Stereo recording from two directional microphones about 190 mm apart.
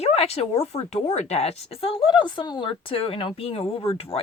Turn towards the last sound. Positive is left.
turn(degrees=30)  # may be behind; listen again after turning